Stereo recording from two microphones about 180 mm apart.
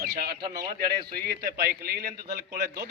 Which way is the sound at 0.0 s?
60° right (ahead or behind).